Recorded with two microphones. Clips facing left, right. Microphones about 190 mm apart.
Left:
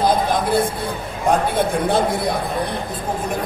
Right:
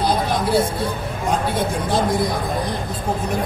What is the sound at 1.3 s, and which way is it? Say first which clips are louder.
Speech: left 3 dB; 55° left (ahead or behind).